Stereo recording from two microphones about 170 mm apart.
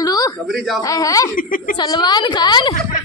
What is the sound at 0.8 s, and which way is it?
Speech, 20° left (ahead or behind).